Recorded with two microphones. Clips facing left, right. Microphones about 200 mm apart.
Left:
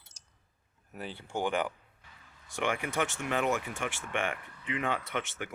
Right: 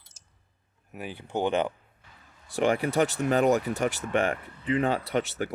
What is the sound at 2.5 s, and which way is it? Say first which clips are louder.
Speech: right 8 dB; 35° right (ahead or behind).